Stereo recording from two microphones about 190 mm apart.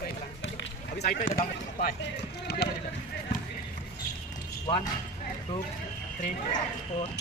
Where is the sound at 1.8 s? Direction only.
60° left (ahead or behind).